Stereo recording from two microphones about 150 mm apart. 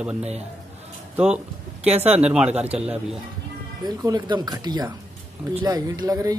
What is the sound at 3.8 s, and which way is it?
A man's voice, 25° right (ahead or behind).